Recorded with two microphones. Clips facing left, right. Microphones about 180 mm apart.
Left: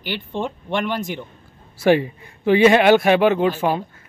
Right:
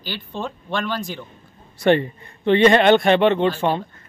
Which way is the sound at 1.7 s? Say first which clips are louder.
Left 1 dB; 5° left (ahead or behind).